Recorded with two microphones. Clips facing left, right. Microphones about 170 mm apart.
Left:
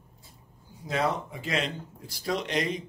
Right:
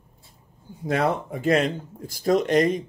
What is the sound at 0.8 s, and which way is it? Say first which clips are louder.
Speech: right 5 dB; 55° right (ahead or behind).